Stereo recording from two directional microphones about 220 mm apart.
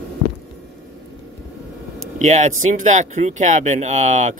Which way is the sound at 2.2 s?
35° right (ahead or behind).